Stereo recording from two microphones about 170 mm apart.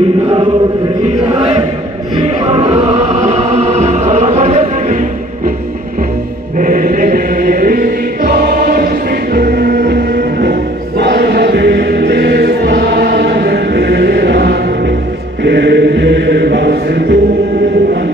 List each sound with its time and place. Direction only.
1.0 s chant: 35° right (ahead or behind)
2.2 s choir: 35° right (ahead or behind)
6.6 s music: 50° right (ahead or behind); by 15.0 s 75° right (ahead or behind)
15.4 s chant: 80° right